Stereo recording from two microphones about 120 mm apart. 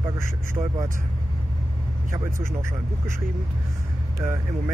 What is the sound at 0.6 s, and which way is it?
Speech, 45° right (ahead or behind).